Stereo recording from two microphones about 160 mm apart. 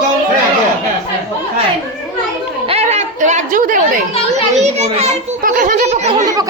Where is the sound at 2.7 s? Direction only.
45° right (ahead or behind).